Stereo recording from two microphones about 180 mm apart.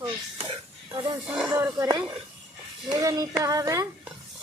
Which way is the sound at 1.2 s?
5° right (ahead or behind).